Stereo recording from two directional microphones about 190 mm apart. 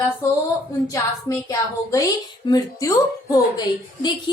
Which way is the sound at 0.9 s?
15° left (ahead or behind).